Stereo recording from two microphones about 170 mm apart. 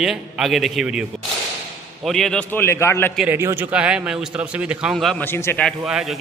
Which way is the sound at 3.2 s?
15° right (ahead or behind).